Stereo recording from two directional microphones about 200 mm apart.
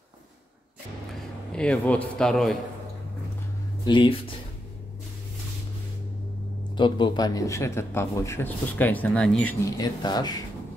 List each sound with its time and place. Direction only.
1.5 s a man's voice: 5° left (ahead or behind)
3.8 s speech: 25° left (ahead or behind)
6.8 s speech: 20° left (ahead or behind); by 9.6 s 5° left (ahead or behind)
9.8 s speech: 20° left (ahead or behind)